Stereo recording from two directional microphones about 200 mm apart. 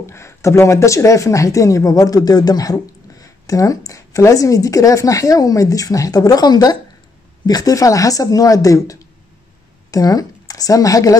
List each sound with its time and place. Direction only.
0.0 s a woman's voice: 15° left (ahead or behind)